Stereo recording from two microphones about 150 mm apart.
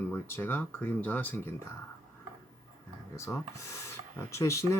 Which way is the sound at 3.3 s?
20° left (ahead or behind).